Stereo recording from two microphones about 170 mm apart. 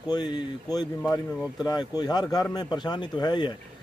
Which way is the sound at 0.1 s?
25° left (ahead or behind).